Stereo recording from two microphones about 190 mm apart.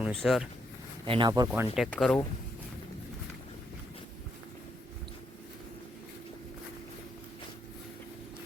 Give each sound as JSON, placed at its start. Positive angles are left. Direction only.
{"t": 0.0, "sound": "speech", "side_deg": 0}
{"t": 1.0, "sound": "speech", "side_deg": -25}
{"t": 1.7, "sound": "speech", "side_deg": 0}